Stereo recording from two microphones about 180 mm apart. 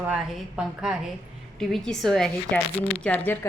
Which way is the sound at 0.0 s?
5° right (ahead or behind).